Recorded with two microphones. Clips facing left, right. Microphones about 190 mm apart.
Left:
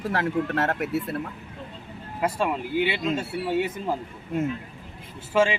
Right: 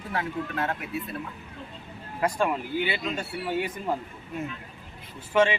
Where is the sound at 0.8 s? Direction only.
85° left.